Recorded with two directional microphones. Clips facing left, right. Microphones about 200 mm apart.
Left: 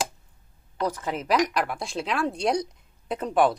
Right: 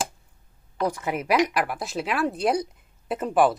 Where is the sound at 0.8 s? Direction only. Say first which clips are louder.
Right 2 dB; 10° right (ahead or behind).